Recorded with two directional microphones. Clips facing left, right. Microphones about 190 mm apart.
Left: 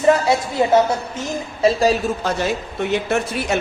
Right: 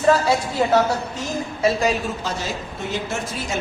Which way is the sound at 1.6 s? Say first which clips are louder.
Left 4 dB; 35° left (ahead or behind).